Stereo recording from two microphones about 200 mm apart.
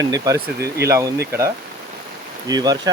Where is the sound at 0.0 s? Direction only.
15° right (ahead or behind).